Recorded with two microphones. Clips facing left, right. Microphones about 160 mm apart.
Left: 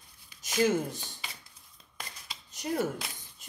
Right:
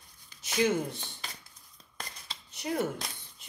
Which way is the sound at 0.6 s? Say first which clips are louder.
Left 1 dB; 45° left (ahead or behind).